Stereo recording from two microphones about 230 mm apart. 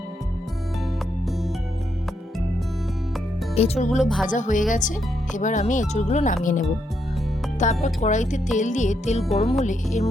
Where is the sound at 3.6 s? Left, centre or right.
Left.